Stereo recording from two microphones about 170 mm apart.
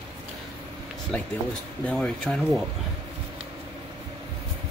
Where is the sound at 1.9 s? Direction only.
5° left (ahead or behind).